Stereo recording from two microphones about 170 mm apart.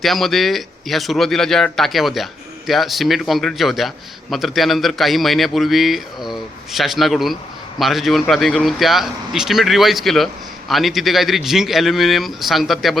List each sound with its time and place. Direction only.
0.0 s a man's voice: centre (ahead or behind)